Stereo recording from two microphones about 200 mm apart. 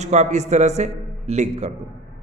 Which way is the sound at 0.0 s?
35° right (ahead or behind).